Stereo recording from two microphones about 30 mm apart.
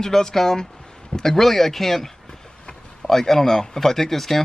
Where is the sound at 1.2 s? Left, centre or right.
Centre.